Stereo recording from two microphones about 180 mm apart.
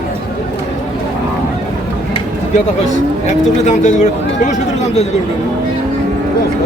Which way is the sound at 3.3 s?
40° left (ahead or behind).